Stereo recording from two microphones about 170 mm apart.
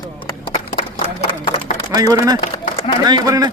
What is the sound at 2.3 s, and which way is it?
Speech, 45° left (ahead or behind).